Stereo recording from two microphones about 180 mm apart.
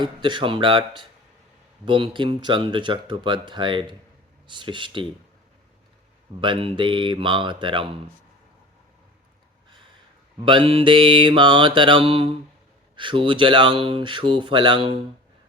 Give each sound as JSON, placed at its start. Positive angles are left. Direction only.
{"t": 0.0, "sound": "speech", "side_deg": -25}
{"t": 6.4, "sound": "speech", "side_deg": -30}
{"t": 10.4, "sound": "speech", "side_deg": -30}